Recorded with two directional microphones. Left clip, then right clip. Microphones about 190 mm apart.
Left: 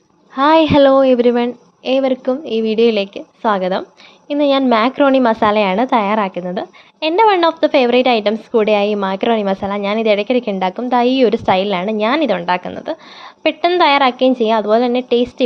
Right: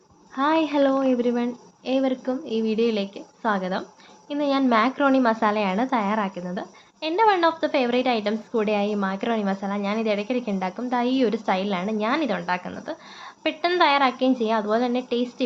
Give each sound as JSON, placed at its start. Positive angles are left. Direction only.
{"t": 0.3, "sound": "a woman's voice", "side_deg": 55}